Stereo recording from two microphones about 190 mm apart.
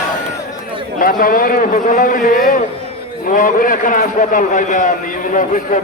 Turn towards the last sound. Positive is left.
turn(degrees=45)  # may be behind; listen again after turning